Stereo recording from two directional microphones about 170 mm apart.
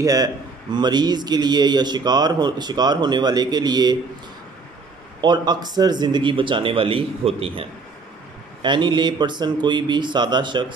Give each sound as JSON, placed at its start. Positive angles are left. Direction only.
{"t": 0.0, "sound": "a man's voice", "side_deg": -20}
{"t": 5.2, "sound": "a man's voice", "side_deg": -25}
{"t": 8.6, "sound": "a man's voice", "side_deg": -25}